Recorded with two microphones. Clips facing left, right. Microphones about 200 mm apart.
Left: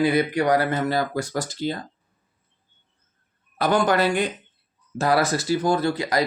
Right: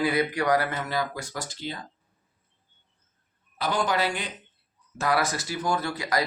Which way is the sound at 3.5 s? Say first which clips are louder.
Left 6 dB; 55° left (ahead or behind).